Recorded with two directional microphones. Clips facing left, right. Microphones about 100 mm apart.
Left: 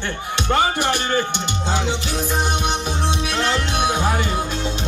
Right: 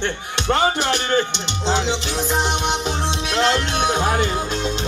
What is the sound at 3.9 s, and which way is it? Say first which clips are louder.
Speech: right 3 dB; 20° right (ahead or behind).